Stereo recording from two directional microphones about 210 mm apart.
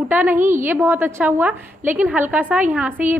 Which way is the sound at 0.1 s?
10° right (ahead or behind).